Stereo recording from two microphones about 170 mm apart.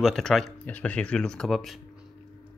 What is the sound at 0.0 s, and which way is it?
Speech, centre (ahead or behind).